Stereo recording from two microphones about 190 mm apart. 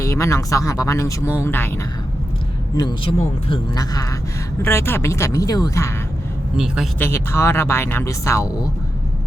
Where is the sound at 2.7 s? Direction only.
25° left (ahead or behind).